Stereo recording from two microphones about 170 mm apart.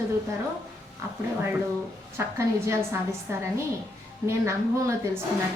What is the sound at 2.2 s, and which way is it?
Speech, 15° right (ahead or behind).